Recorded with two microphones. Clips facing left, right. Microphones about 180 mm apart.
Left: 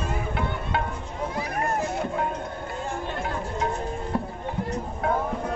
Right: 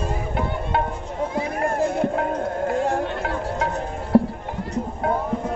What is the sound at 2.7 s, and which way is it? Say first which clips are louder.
Music: right 9 dB; 85° right.